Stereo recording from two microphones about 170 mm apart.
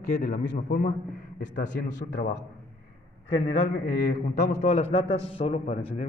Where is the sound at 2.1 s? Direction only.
90° left.